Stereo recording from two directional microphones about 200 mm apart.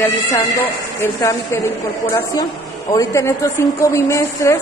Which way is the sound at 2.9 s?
15° left (ahead or behind).